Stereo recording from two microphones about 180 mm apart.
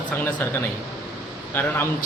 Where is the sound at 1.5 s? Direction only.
10° left (ahead or behind).